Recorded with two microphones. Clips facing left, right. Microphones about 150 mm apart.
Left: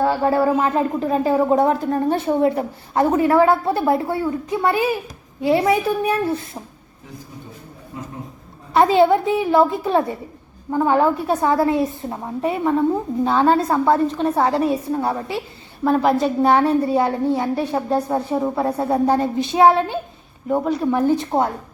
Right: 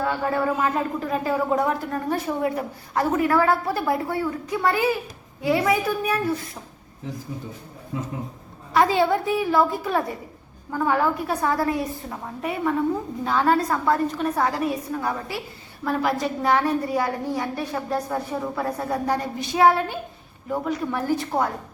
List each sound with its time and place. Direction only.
0.0 s speech: 30° left (ahead or behind)
7.9 s a man's voice: 90° right
8.7 s speech: 25° left (ahead or behind)